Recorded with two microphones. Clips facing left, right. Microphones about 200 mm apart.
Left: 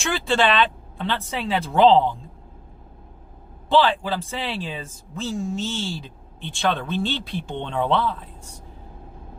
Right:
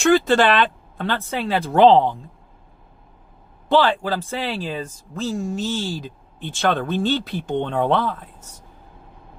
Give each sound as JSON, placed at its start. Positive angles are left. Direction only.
{"t": 0.1, "sound": "speech", "side_deg": -45}
{"t": 3.7, "sound": "speech", "side_deg": -40}